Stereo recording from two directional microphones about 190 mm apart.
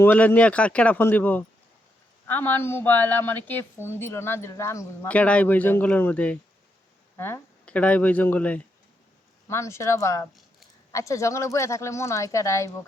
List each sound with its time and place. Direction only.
0.0 s a woman's voice: 10° left (ahead or behind)